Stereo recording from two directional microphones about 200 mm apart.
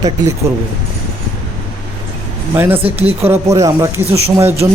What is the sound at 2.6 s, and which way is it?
Speech, 30° right (ahead or behind).